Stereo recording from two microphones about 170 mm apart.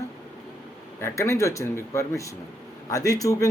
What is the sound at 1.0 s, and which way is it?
Speech, 15° left (ahead or behind).